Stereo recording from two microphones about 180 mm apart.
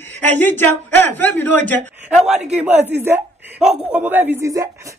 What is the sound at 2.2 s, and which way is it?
Speech, 40° right (ahead or behind).